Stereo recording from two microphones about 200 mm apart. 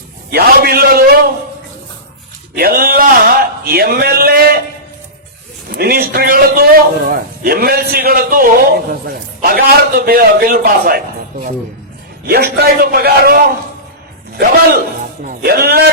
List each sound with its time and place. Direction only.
0.3 s a man's voice: 50° right (ahead or behind)
2.6 s a man's voice: 50° right (ahead or behind)
5.7 s a man's voice: 50° right (ahead or behind)
12.2 s a man's voice: 55° right (ahead or behind)